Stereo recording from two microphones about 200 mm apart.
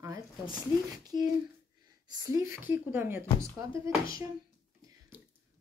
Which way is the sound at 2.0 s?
15° right (ahead or behind).